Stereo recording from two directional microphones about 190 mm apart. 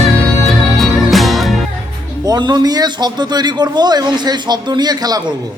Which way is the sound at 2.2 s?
20° right (ahead or behind).